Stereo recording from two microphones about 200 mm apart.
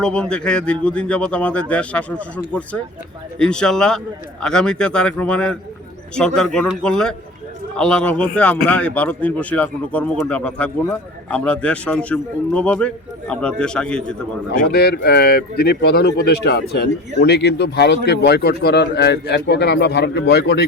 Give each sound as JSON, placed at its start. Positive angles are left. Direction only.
{"t": 0.0, "sound": "a man's voice", "side_deg": 5}
{"t": 14.5, "sound": "a man's voice", "side_deg": 50}